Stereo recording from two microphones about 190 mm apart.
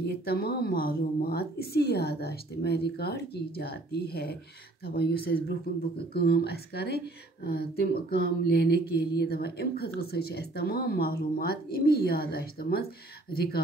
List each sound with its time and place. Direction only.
0.0 s speech: 55° left (ahead or behind)